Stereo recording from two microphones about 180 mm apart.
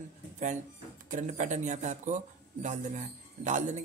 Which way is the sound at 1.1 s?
45° right (ahead or behind).